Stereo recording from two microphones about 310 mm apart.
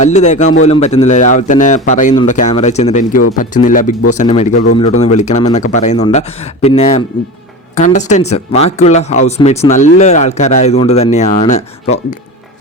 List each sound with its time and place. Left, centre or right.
0.0 s speech: left